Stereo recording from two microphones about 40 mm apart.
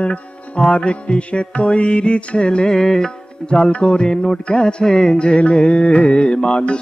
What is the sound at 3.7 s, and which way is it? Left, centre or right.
Music, left.